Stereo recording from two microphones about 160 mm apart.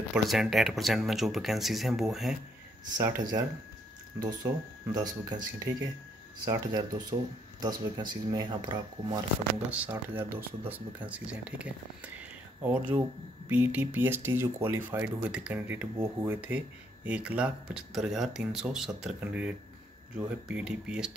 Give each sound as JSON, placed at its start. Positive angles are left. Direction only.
{"t": 0.1, "sound": "speech", "side_deg": 0}
{"t": 3.0, "sound": "speech", "side_deg": -15}
{"t": 4.9, "sound": "speech", "side_deg": -25}
{"t": 9.7, "sound": "speech", "side_deg": -10}